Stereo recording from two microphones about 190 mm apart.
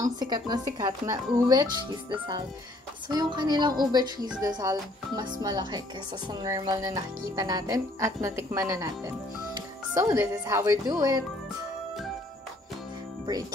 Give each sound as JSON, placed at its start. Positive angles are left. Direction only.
{"t": 0.0, "sound": "speech", "side_deg": -20}